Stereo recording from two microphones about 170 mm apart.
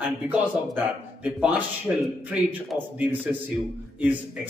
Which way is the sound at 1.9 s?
15° right (ahead or behind).